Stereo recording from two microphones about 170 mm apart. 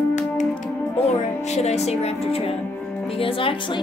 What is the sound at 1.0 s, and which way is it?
A woman's voice, 40° left (ahead or behind).